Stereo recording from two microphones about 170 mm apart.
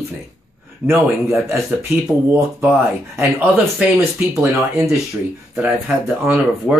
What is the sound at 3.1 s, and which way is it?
Speech, 10° right (ahead or behind).